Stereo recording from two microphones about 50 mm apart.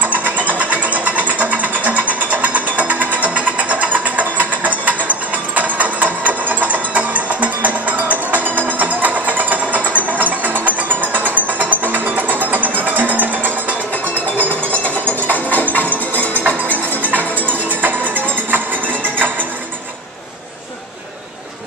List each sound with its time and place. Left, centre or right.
0.0 s vehicle: right
8.7 s music: right
15.2 s music: left
17.0 s music: right